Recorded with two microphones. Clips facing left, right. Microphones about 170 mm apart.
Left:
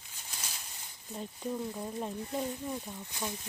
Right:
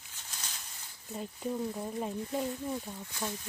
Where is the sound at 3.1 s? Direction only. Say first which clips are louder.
Right 1 dB; 15° left (ahead or behind).